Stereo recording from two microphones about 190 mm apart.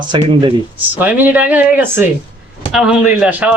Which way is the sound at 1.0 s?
10° right (ahead or behind).